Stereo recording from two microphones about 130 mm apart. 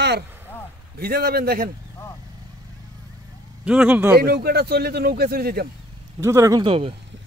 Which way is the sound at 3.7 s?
10° right (ahead or behind).